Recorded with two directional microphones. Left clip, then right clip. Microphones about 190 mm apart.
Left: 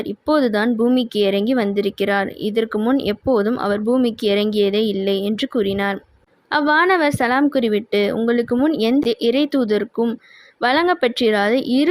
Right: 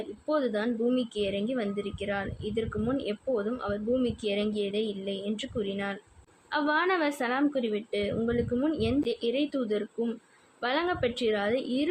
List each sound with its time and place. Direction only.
0.3 s speech: 45° left (ahead or behind)